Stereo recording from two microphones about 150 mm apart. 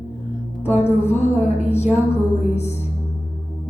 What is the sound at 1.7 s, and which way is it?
Speech, 45° left (ahead or behind).